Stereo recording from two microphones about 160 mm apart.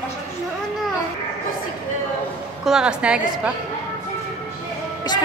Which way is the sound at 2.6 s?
5° right (ahead or behind).